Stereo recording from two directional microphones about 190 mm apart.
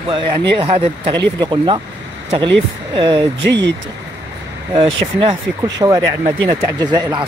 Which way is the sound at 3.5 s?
65° right (ahead or behind).